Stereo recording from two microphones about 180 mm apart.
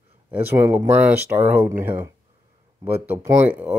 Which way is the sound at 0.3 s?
10° right (ahead or behind).